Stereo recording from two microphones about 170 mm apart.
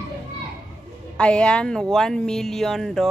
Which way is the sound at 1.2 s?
5° left (ahead or behind).